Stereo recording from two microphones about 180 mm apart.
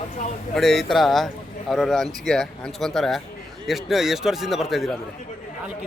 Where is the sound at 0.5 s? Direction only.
Centre (ahead or behind).